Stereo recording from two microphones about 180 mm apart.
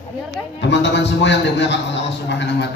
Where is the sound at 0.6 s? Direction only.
80° left.